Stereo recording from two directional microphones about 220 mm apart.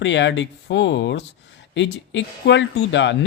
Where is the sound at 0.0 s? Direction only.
55° left (ahead or behind).